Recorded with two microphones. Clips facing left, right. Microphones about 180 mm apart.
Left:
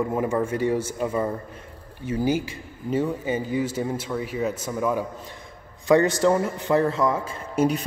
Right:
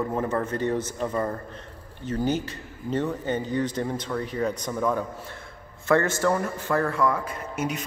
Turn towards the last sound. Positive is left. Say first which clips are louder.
# left 7 dB
turn(degrees=30)  # may be behind; listen again after turning